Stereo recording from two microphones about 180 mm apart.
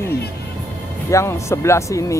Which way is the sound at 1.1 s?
15° left (ahead or behind).